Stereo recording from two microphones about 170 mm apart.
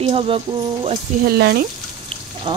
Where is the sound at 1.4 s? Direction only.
70° right (ahead or behind).